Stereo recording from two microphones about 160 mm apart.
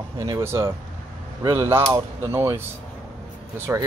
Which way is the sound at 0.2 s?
15° right (ahead or behind).